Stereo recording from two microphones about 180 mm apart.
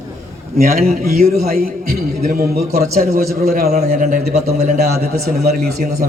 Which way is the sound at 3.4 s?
55° right (ahead or behind).